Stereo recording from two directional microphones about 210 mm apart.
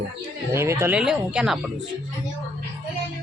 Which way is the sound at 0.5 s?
10° right (ahead or behind).